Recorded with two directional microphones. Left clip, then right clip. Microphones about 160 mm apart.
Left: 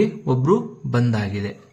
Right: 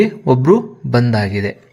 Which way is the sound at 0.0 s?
35° right (ahead or behind).